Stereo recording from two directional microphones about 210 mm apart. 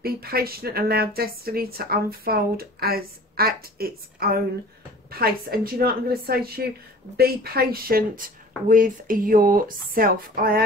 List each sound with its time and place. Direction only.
0.0 s speech: 45° right (ahead or behind)